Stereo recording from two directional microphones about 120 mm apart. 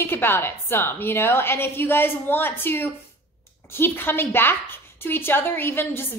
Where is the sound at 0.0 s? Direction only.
20° left (ahead or behind).